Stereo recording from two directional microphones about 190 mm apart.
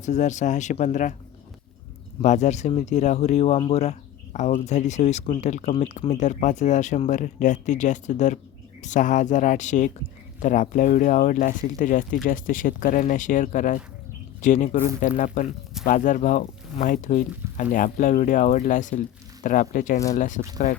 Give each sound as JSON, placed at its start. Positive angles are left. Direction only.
{"t": 0.0, "sound": "speech", "side_deg": 40}
{"t": 2.2, "sound": "speech", "side_deg": 40}